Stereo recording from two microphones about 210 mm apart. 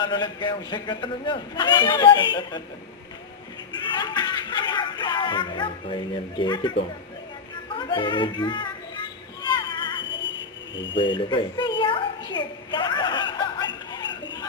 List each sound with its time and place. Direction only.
0.0 s speech: 20° left (ahead or behind)
3.9 s speech: 20° left (ahead or behind)
9.5 s a sound: 20° left (ahead or behind)
10.9 s a woman's voice: 25° left (ahead or behind)